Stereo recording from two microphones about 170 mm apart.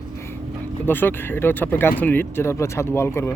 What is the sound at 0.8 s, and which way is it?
Speech, 10° left (ahead or behind).